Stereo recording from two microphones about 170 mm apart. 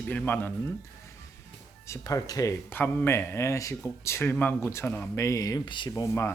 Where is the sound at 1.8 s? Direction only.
20° left (ahead or behind).